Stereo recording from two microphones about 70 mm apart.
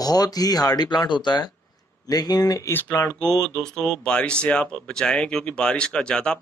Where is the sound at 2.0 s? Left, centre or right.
Left.